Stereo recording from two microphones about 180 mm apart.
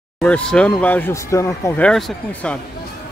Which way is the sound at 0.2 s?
5° left (ahead or behind).